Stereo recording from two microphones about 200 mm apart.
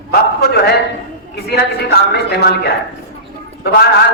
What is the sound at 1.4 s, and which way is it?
A man's voice, 55° left (ahead or behind).